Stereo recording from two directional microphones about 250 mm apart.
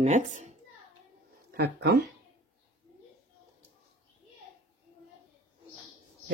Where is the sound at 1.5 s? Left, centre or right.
Right.